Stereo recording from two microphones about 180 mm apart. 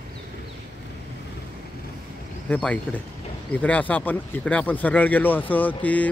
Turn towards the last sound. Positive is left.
turn(degrees=10)  # may be behind; listen again after turning